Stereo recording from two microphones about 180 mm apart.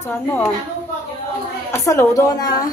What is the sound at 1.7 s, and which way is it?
Speech, 15° left (ahead or behind).